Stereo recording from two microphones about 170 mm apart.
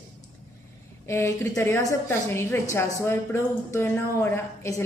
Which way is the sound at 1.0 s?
15° left (ahead or behind).